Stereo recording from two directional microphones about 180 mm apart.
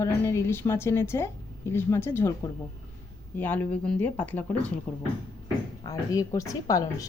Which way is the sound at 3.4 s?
10° left (ahead or behind).